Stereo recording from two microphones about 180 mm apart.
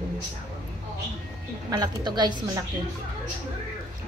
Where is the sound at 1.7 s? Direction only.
25° right (ahead or behind).